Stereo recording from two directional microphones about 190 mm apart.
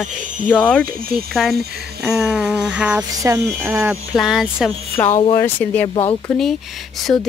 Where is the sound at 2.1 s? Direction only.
5° right (ahead or behind).